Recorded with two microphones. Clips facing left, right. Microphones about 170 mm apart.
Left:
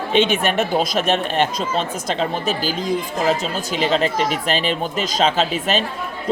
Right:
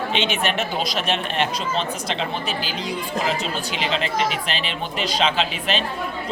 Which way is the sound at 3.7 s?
45° left (ahead or behind).